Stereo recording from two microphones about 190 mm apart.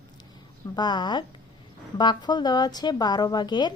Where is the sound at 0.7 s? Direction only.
25° left (ahead or behind).